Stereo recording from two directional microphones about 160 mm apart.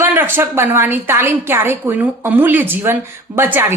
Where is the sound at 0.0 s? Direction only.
15° right (ahead or behind).